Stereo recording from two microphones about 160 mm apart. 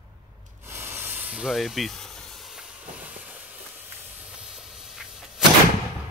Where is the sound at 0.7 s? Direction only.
15° right (ahead or behind).